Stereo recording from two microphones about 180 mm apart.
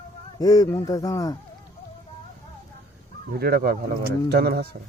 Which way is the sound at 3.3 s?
60° right (ahead or behind).